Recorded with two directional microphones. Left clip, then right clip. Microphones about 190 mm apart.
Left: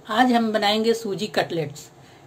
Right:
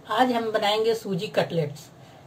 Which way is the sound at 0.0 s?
60° left (ahead or behind).